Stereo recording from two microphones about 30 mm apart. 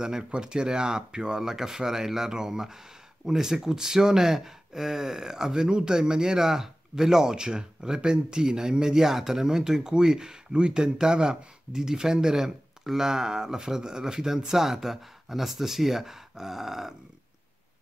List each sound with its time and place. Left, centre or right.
0.0 s speech: right
8.9 s speech: centre